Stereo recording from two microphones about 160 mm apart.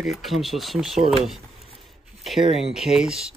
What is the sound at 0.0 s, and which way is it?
Speech, centre (ahead or behind).